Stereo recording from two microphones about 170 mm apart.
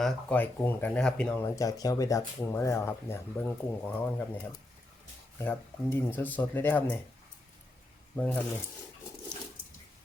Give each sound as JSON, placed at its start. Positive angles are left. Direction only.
{"t": 0.0, "sound": "speech", "side_deg": 10}
{"t": 1.5, "sound": "speech", "side_deg": 20}
{"t": 8.1, "sound": "speech", "side_deg": 10}